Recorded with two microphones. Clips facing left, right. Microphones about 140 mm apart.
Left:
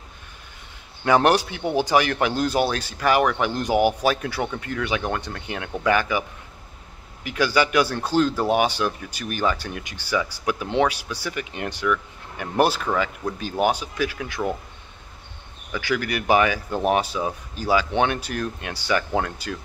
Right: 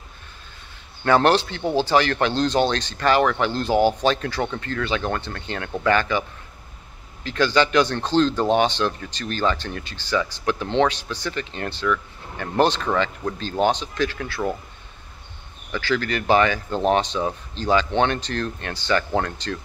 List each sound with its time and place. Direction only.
1.0 s speech: 15° left (ahead or behind)
7.2 s speech: 10° left (ahead or behind)
15.7 s speech: 15° left (ahead or behind)